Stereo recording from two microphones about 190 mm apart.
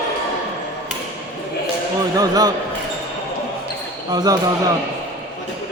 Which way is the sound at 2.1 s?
20° right (ahead or behind).